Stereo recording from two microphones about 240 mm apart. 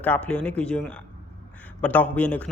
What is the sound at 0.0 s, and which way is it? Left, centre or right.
A man's voice, centre.